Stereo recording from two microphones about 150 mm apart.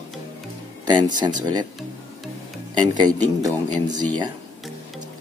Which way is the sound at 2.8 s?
25° right (ahead or behind).